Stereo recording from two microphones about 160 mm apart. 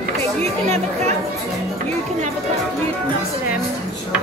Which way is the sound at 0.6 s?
45° right (ahead or behind).